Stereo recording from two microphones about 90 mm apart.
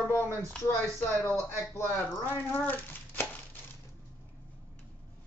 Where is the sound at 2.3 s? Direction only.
25° left (ahead or behind).